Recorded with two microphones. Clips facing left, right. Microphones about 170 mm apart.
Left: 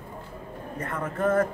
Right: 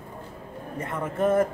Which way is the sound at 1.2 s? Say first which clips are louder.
Right 2 dB; 20° right (ahead or behind).